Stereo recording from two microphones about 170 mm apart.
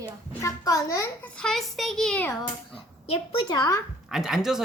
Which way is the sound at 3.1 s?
30° left (ahead or behind).